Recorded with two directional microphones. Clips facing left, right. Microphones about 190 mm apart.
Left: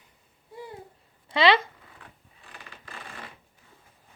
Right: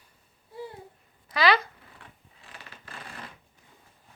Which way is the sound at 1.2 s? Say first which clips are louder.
Left 3 dB; 25° left (ahead or behind).